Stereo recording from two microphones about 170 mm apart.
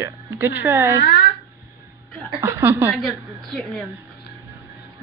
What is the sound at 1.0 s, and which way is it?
Speech, 75° left (ahead or behind).